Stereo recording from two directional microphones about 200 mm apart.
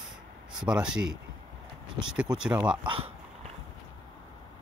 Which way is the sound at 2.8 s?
25° right (ahead or behind).